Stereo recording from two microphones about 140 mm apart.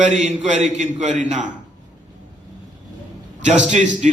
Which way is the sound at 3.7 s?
60° right (ahead or behind).